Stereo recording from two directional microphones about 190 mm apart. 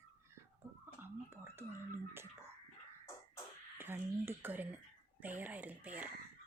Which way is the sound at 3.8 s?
10° right (ahead or behind).